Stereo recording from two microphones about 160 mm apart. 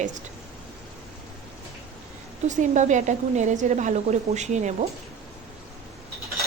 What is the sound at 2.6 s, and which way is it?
A woman's voice, 50° right (ahead or behind).